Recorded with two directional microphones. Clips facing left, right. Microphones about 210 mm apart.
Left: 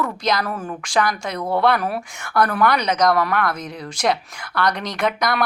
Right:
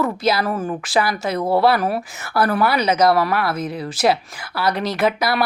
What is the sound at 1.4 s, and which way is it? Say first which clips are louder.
Speech: right 4 dB; 30° right (ahead or behind).